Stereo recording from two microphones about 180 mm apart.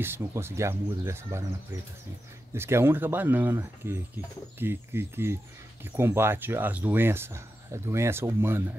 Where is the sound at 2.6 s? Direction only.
15° right (ahead or behind).